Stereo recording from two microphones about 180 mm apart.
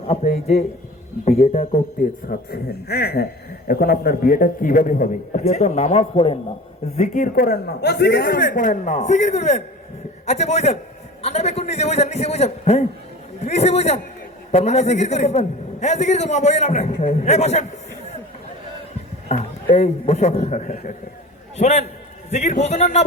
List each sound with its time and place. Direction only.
0.1 s a man's voice: 35° left (ahead or behind)
2.2 s a man's voice: 60° left (ahead or behind); by 17.7 s 40° left (ahead or behind)
19.3 s a man's voice: 35° left (ahead or behind)